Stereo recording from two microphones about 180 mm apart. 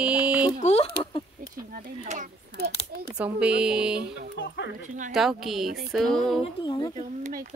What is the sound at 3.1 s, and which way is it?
Speech, 5° right (ahead or behind).